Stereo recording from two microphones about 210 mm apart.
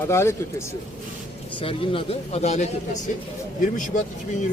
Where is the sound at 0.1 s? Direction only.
10° left (ahead or behind).